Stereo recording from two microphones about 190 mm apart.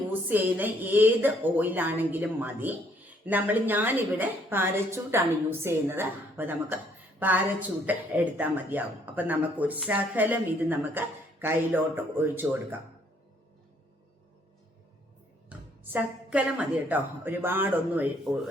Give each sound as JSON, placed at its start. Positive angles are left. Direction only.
{"t": 0.1, "sound": "speech", "side_deg": -10}
{"t": 15.4, "sound": "speech", "side_deg": -10}